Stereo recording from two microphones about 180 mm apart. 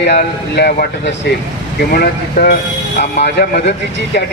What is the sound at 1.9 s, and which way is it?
Speech, 55° left (ahead or behind).